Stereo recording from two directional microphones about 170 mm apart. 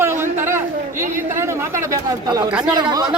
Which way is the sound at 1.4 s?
15° right (ahead or behind).